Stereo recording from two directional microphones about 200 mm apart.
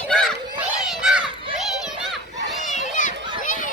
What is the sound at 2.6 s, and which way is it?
Run, 35° left (ahead or behind).